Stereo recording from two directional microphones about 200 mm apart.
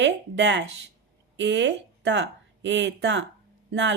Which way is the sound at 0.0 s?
60° right (ahead or behind).